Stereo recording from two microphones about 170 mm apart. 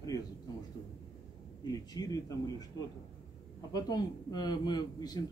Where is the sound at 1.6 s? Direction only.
25° left (ahead or behind).